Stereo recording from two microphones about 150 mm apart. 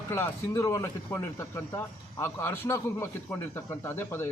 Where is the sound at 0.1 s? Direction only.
20° left (ahead or behind).